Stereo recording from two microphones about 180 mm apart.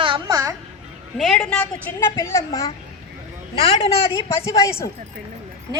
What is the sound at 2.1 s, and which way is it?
Speech, 15° left (ahead or behind).